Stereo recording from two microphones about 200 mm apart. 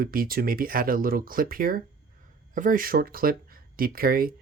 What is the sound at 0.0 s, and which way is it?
Speech, 45° right (ahead or behind).